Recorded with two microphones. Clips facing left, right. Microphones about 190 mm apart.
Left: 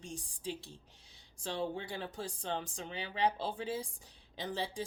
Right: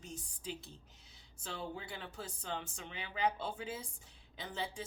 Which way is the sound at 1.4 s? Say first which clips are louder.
Left 6 dB; 30° left (ahead or behind).